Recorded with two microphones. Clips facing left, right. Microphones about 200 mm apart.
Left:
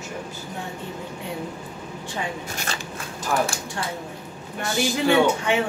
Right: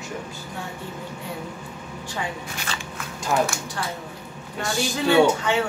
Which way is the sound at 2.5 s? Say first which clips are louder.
Left 1 dB; 45° left (ahead or behind).